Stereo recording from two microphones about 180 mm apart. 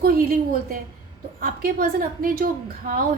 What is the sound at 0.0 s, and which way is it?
A woman's voice, 55° right (ahead or behind).